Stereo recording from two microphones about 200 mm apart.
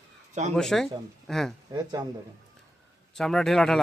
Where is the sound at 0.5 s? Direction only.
Centre (ahead or behind).